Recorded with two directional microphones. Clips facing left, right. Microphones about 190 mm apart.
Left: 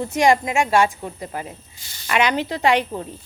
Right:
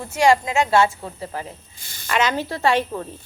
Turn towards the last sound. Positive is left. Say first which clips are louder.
# left 1 dB
turn(degrees=15)  # may be behind; listen again after turning